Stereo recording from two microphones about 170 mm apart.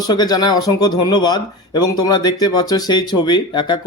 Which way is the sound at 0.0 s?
25° left (ahead or behind).